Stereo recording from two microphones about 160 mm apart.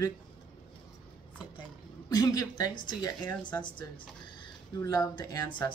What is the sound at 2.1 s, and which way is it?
Speech, 25° left (ahead or behind).